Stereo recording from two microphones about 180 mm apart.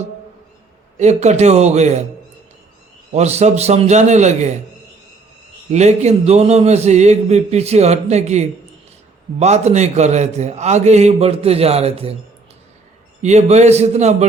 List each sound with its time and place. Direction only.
0.9 s a man's voice: 40° right (ahead or behind)
3.1 s a man's voice: 35° right (ahead or behind)
5.7 s a man's voice: 40° right (ahead or behind)
13.2 s a man's voice: 40° right (ahead or behind)